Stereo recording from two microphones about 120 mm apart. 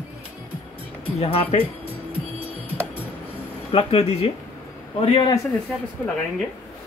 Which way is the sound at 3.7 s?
55° left (ahead or behind).